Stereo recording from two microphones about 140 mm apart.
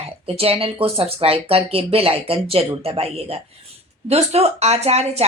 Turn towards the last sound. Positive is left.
turn(degrees=-50)  # may be behind; listen again after turning